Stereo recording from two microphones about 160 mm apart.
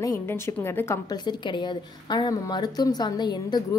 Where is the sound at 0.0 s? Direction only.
15° left (ahead or behind).